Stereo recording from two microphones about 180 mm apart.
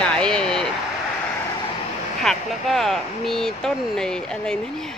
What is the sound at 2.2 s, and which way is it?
Speech, centre (ahead or behind).